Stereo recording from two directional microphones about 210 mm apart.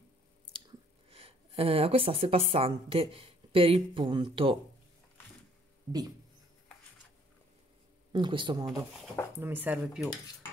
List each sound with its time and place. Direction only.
0.7 s speech: 25° right (ahead or behind)
5.9 s speech: 20° right (ahead or behind)
8.1 s speech: 25° right (ahead or behind)
9.4 s speech: 10° right (ahead or behind)